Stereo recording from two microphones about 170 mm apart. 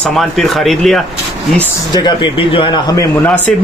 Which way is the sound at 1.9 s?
25° left (ahead or behind).